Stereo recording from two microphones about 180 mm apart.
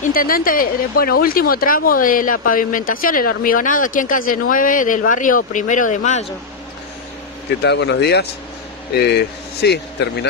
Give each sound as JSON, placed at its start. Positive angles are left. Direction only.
{"t": 0.0, "sound": "speech", "side_deg": 50}
{"t": 7.6, "sound": "speech", "side_deg": 75}